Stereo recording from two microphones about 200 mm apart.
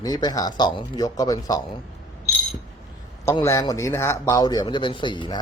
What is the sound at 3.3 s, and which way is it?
A man's voice, 15° left (ahead or behind).